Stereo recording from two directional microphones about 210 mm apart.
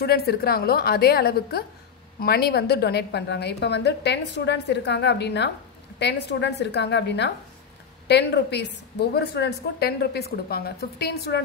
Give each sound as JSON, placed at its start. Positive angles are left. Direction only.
{"t": 0.0, "sound": "a woman's voice", "side_deg": 50}